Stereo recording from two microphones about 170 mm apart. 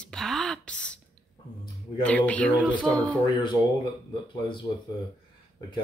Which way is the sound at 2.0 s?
10° left (ahead or behind).